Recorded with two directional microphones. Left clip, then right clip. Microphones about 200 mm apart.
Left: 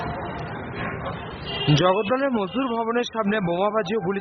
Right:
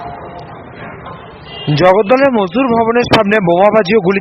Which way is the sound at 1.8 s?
30° right (ahead or behind).